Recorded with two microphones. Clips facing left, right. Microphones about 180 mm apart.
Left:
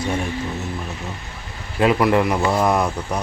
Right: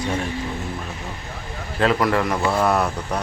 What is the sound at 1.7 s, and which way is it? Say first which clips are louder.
Speech: left 3 dB; 10° left (ahead or behind).